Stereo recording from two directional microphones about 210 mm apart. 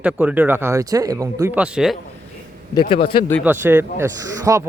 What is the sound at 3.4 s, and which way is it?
Speech, 10° right (ahead or behind).